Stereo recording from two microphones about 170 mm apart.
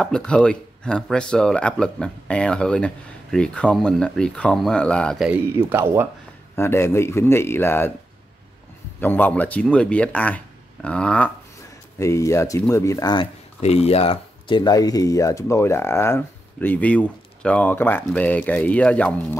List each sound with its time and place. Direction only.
0.0 s speech: 5° left (ahead or behind)
5.7 s speech: 10° right (ahead or behind)
6.5 s speech: 15° left (ahead or behind)
9.0 s speech: 10° left (ahead or behind)
12.0 s speech: 20° left (ahead or behind)
13.6 s speech: 40° left (ahead or behind); by 19.1 s 10° left (ahead or behind)